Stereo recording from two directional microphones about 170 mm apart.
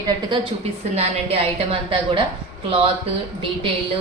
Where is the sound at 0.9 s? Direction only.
35° right (ahead or behind).